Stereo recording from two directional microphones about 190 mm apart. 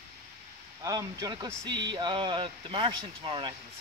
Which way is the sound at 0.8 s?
20° right (ahead or behind).